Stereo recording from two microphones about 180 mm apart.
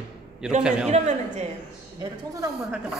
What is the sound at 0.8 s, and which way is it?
Speech, 40° right (ahead or behind).